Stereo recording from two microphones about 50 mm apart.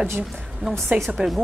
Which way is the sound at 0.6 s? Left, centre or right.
Right.